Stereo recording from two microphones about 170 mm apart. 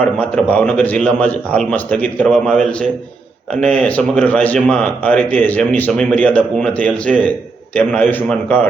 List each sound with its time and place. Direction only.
0.0 s speech: 5° left (ahead or behind)